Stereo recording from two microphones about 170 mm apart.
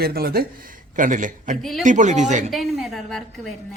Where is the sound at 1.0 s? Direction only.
50° right (ahead or behind).